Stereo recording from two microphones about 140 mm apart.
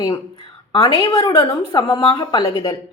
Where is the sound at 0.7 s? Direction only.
25° left (ahead or behind).